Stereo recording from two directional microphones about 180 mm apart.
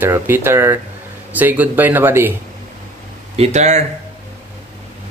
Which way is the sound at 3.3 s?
40° right (ahead or behind).